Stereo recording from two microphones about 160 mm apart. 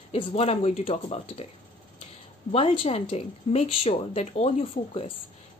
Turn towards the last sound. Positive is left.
turn(degrees=35)  # may be behind; listen again after turning